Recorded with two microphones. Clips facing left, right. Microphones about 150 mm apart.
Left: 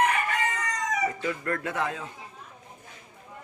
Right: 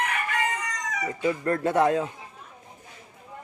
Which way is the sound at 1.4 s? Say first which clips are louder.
Right 10 dB; 35° right (ahead or behind).